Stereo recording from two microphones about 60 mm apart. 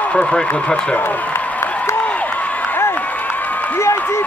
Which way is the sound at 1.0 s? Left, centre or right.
Left.